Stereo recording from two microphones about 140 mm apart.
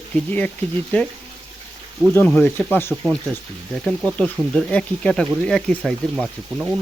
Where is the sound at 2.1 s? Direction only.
15° left (ahead or behind).